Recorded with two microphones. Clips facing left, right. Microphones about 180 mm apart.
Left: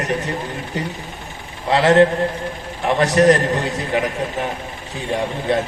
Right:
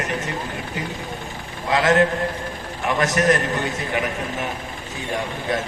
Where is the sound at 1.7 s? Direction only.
30° left (ahead or behind).